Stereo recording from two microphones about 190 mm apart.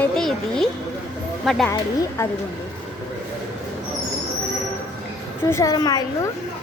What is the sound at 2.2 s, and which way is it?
Speech, 15° left (ahead or behind).